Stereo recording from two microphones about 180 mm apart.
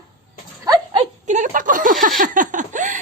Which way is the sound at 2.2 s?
45° right (ahead or behind).